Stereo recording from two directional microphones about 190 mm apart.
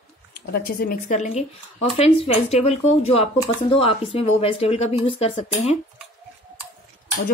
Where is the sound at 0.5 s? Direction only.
55° left (ahead or behind); by 5.8 s 35° left (ahead or behind).